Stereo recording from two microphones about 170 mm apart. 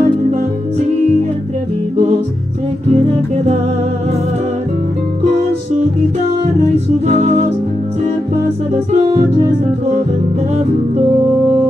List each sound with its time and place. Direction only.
7.1 s music: 40° right (ahead or behind)
8.7 s music: 35° right (ahead or behind)